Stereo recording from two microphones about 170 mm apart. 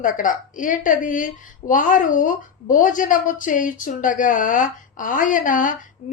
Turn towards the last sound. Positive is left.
turn(degrees=50)  # may be behind; listen again after turning